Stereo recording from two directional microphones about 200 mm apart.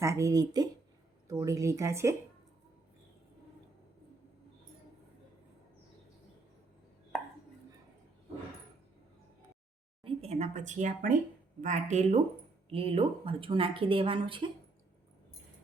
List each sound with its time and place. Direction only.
0.0 s speech: 15° right (ahead or behind)
10.0 s a woman's voice: 30° right (ahead or behind)